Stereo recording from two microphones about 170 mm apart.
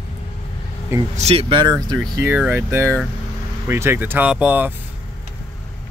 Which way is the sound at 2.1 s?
15° right (ahead or behind).